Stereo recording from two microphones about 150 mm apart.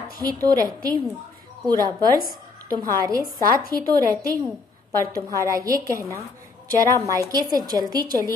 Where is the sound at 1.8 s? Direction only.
25° right (ahead or behind).